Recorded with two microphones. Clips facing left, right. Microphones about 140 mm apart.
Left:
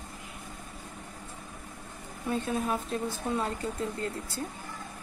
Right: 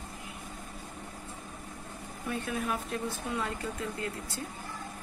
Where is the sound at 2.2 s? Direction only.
30° left (ahead or behind).